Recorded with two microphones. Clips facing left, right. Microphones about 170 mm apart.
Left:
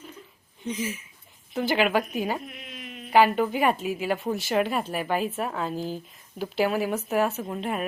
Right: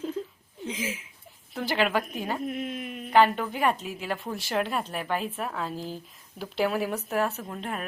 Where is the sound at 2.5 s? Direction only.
50° right (ahead or behind).